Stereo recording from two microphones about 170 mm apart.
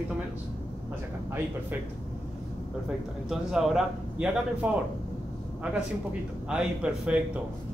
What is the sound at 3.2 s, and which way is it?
Speech, 5° right (ahead or behind).